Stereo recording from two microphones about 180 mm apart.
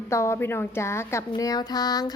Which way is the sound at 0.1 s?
15° left (ahead or behind).